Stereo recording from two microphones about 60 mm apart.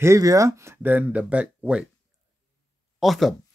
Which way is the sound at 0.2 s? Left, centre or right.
Right.